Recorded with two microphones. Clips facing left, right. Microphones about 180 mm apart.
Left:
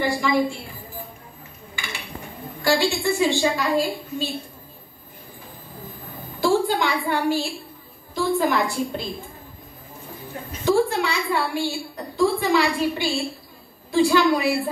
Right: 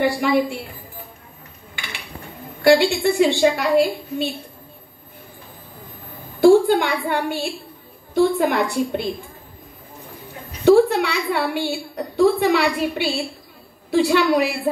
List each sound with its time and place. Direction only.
0.0 s a woman's voice: 60° right (ahead or behind)
2.6 s a woman's voice: 60° right (ahead or behind)
6.4 s a woman's voice: 60° right (ahead or behind)
10.6 s a woman's voice: 65° right (ahead or behind)